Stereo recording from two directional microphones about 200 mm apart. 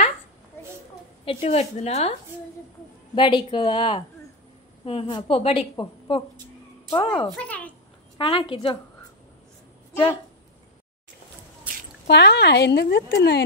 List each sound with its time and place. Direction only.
1.2 s a woman's voice: 30° left (ahead or behind)
3.2 s a woman's voice: 25° left (ahead or behind)
7.2 s a child's voice: 5° left (ahead or behind)
8.2 s a woman's voice: 25° left (ahead or behind)
12.1 s speech: 60° left (ahead or behind)